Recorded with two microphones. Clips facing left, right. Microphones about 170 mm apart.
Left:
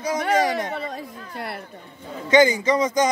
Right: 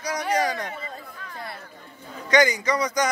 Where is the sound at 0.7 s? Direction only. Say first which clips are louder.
Left 7 dB; 75° left (ahead or behind).